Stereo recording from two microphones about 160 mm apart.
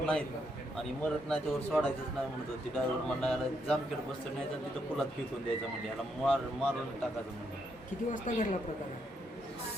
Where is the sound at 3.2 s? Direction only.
5° left (ahead or behind).